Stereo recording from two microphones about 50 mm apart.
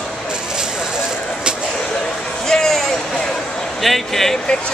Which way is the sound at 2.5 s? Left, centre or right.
Centre.